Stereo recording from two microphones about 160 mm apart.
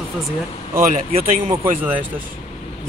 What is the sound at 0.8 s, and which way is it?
Speech, 50° right (ahead or behind).